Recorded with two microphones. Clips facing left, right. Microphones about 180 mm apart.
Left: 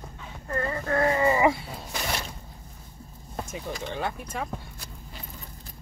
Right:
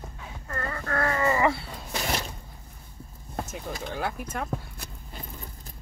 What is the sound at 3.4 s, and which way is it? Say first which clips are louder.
Speech: left 2 dB; 5° right (ahead or behind).